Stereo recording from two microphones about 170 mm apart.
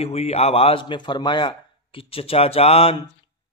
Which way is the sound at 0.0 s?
35° left (ahead or behind).